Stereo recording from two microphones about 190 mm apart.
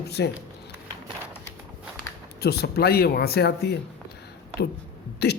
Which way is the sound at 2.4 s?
55° left (ahead or behind).